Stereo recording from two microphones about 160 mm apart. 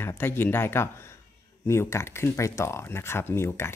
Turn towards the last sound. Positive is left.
turn(degrees=15)  # may be behind; listen again after turning